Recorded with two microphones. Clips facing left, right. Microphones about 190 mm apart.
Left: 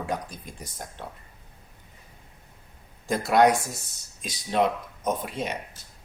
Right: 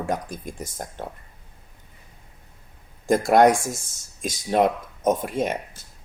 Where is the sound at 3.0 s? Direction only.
50° right (ahead or behind).